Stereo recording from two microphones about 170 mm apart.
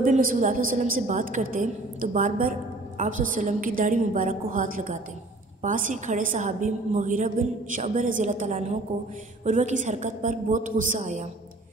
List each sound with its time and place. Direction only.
0.0 s a woman's voice: 55° right (ahead or behind)